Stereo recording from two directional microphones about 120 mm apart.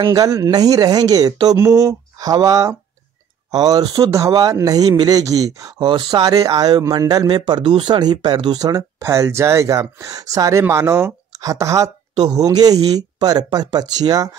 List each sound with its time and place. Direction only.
0.1 s speech: 30° right (ahead or behind)
5.8 s speech: 40° right (ahead or behind)
6.2 s speech: 30° right (ahead or behind)